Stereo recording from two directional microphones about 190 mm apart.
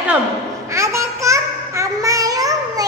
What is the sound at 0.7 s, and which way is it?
Child singing, 15° right (ahead or behind).